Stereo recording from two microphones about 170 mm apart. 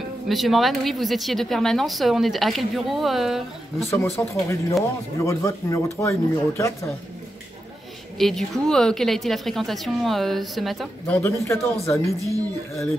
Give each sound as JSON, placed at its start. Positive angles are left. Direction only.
{"t": 0.3, "sound": "speech", "side_deg": 0}
{"t": 3.9, "sound": "speech", "side_deg": 15}
{"t": 8.2, "sound": "speech", "side_deg": 0}
{"t": 11.1, "sound": "speech", "side_deg": 10}